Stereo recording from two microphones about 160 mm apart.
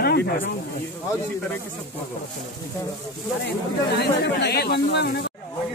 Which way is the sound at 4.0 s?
90° left.